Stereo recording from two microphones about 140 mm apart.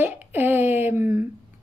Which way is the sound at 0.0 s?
15° right (ahead or behind).